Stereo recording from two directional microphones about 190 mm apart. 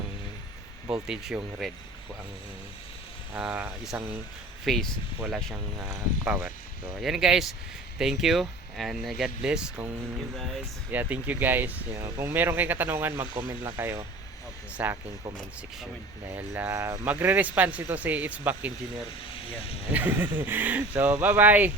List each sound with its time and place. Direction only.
1.0 s speech: 5° right (ahead or behind)
3.3 s speech: 5° right (ahead or behind)
16.3 s speech: 10° right (ahead or behind)
19.9 s speech: 10° right (ahead or behind)